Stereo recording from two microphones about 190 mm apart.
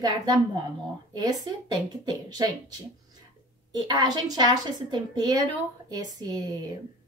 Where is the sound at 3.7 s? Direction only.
20° right (ahead or behind).